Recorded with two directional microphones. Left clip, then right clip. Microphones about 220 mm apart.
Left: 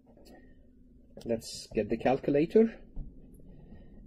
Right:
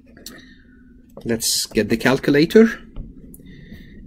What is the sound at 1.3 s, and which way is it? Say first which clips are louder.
Speech: right 12 dB; 10° right (ahead or behind).